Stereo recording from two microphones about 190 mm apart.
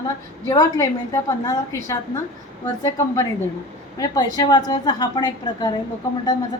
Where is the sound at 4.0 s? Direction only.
20° left (ahead or behind).